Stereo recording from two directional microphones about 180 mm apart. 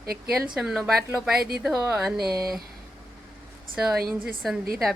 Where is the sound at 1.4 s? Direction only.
60° right (ahead or behind).